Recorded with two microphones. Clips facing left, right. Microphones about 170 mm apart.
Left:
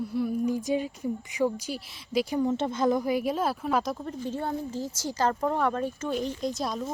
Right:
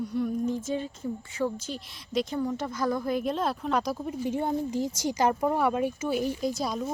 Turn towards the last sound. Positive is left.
turn(degrees=0)  # may be behind; listen again after turning